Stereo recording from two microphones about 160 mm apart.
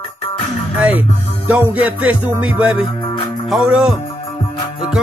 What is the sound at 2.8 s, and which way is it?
Music, 30° left (ahead or behind).